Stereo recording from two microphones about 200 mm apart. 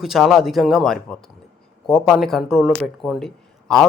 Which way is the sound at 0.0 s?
Centre (ahead or behind).